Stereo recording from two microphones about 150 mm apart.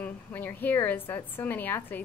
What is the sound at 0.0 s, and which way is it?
A woman's voice, 10° left (ahead or behind).